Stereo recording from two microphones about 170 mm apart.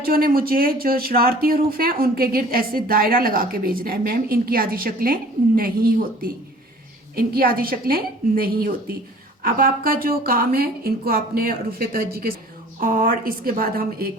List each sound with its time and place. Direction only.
0.0 s speech: 60° right (ahead or behind)